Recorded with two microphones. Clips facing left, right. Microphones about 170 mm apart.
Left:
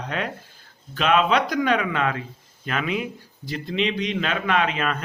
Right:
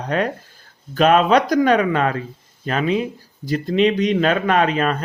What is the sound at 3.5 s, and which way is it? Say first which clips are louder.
Speech: right 8 dB; 45° right (ahead or behind).